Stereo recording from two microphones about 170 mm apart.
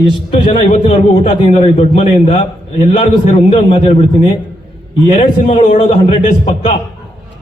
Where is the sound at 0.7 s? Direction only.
35° left (ahead or behind).